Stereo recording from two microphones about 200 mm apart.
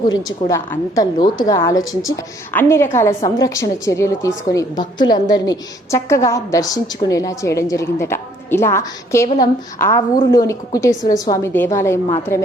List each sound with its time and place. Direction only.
0.3 s a woman's voice: 15° left (ahead or behind)